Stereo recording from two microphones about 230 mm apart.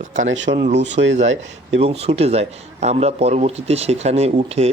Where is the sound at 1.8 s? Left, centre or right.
Right.